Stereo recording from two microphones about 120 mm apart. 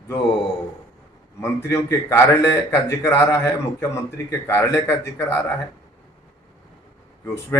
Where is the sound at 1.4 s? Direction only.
20° left (ahead or behind).